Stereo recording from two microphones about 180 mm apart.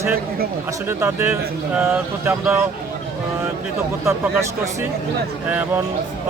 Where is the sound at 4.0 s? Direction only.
15° right (ahead or behind).